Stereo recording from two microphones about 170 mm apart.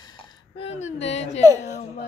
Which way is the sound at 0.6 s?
40° left (ahead or behind).